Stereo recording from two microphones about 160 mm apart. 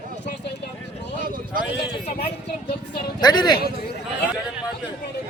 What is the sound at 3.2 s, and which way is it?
Speech, 25° left (ahead or behind).